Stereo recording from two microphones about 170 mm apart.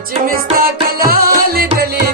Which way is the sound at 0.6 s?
60° right (ahead or behind).